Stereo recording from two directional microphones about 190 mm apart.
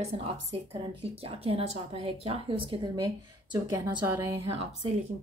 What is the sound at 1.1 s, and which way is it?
Speech, 30° right (ahead or behind).